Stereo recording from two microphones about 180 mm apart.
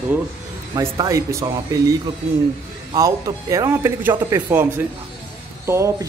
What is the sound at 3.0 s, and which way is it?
Speech, 20° right (ahead or behind).